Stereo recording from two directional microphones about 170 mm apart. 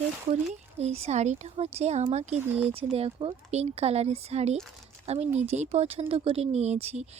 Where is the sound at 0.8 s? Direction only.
40° right (ahead or behind).